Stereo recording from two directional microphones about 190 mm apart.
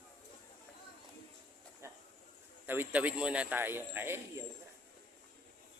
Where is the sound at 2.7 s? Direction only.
10° right (ahead or behind).